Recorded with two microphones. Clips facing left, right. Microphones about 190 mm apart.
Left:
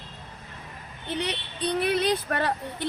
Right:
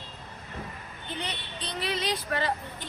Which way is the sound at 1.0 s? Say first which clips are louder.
Left 7 dB; 70° left (ahead or behind).